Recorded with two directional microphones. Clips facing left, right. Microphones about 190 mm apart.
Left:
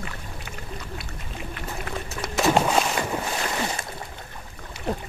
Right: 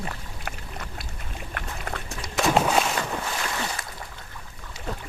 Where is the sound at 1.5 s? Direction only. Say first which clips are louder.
Left 1 dB; 60° right (ahead or behind).